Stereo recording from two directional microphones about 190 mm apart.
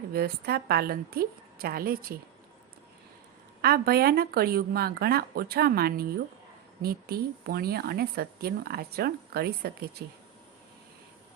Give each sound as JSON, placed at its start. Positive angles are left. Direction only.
{"t": 0.1, "sound": "a woman's voice", "side_deg": -55}
{"t": 3.6, "sound": "speech", "side_deg": -55}